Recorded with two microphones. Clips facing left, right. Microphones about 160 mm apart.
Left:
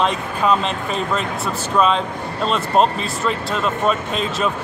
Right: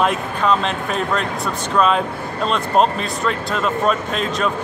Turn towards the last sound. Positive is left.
turn(degrees=0)  # may be behind; listen again after turning